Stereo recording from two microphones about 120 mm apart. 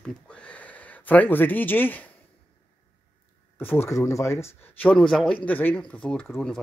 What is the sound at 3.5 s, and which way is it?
Speech, 20° left (ahead or behind).